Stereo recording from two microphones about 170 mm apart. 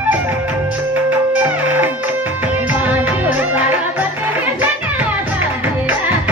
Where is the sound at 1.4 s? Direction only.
10° right (ahead or behind).